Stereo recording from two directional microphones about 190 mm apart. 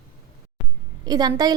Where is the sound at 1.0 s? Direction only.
20° right (ahead or behind).